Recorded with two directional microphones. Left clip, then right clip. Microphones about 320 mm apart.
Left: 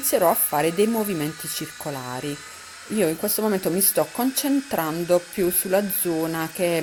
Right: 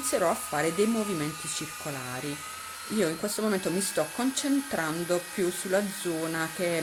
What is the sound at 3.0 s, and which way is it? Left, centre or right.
Speech, centre.